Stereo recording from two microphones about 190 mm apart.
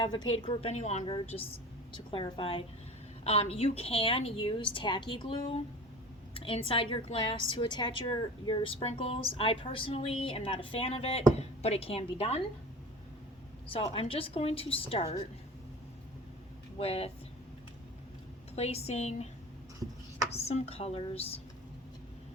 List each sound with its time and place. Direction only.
0.0 s a woman's voice: 25° left (ahead or behind)
13.7 s a woman's voice: 30° left (ahead or behind)
16.7 s a woman's voice: 30° left (ahead or behind)
18.5 s a woman's voice: 35° left (ahead or behind)
20.3 s a woman's voice: 35° left (ahead or behind)